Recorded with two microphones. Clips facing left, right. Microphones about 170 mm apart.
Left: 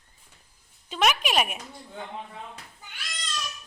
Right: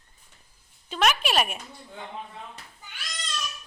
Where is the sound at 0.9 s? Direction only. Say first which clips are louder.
Even; 10° left (ahead or behind).